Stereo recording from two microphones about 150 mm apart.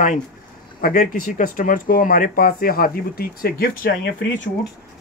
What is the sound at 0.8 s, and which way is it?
Speech, 70° left (ahead or behind).